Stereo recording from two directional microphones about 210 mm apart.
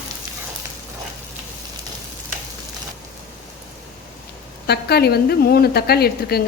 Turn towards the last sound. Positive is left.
turn(degrees=50)  # may be behind; listen again after turning